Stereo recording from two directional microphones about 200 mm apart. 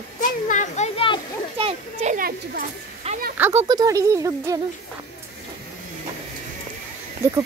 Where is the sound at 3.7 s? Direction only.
15° right (ahead or behind).